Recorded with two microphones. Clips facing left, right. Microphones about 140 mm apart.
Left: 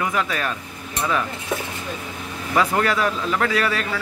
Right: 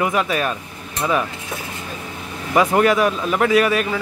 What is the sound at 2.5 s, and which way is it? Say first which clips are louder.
A man's voice: right 5 dB; 20° right (ahead or behind).